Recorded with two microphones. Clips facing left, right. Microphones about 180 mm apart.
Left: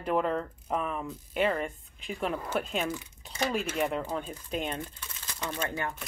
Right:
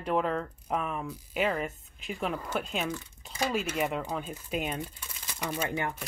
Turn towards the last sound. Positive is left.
turn(degrees=-10)  # may be behind; listen again after turning